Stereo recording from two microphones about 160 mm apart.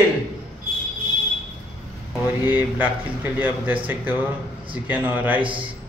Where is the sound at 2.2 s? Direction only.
10° right (ahead or behind).